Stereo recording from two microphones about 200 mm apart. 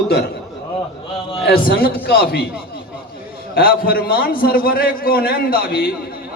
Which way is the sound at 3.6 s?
50° left (ahead or behind).